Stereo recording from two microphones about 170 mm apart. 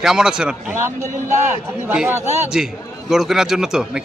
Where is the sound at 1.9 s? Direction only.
5° right (ahead or behind).